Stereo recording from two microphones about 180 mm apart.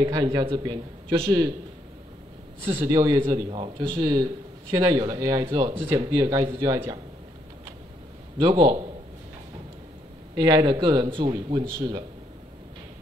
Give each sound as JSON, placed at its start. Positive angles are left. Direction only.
{"t": 0.0, "sound": "a man's voice", "side_deg": -20}
{"t": 2.6, "sound": "a man's voice", "side_deg": -15}
{"t": 8.4, "sound": "a man's voice", "side_deg": -25}
{"t": 10.3, "sound": "a man's voice", "side_deg": -20}